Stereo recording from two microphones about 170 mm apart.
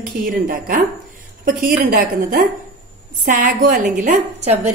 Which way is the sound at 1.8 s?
55° right (ahead or behind).